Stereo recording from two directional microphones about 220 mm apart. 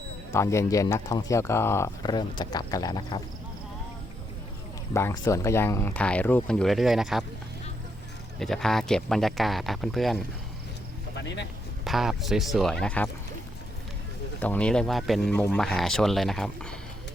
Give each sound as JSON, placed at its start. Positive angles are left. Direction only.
{"t": 0.3, "sound": "speech", "side_deg": 15}
{"t": 4.9, "sound": "speech", "side_deg": 15}
{"t": 8.4, "sound": "speech", "side_deg": 0}
{"t": 11.2, "sound": "speech", "side_deg": 50}
{"t": 11.9, "sound": "speech", "side_deg": 0}
{"t": 14.3, "sound": "speech", "side_deg": 5}